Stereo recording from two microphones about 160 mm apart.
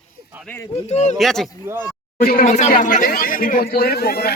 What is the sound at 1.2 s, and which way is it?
Speech, centre (ahead or behind).